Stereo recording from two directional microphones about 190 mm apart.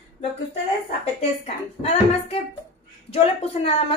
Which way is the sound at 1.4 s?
35° left (ahead or behind).